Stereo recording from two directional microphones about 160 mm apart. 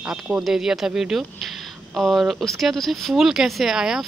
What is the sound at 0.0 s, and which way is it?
Speech, 5° right (ahead or behind).